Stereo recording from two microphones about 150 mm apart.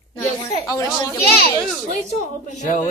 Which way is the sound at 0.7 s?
20° left (ahead or behind).